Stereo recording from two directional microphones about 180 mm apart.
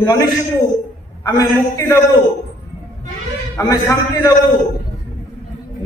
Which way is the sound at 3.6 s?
20° left (ahead or behind).